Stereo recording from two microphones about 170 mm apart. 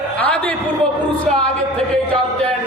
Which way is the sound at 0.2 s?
10° left (ahead or behind).